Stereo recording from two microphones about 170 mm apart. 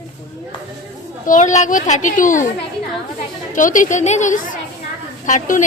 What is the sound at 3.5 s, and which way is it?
A woman's voice, 50° left (ahead or behind).